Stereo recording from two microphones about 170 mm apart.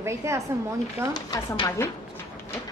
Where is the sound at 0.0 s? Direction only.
15° right (ahead or behind).